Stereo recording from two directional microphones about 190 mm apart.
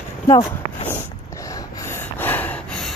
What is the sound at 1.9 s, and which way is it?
Snort, 10° left (ahead or behind).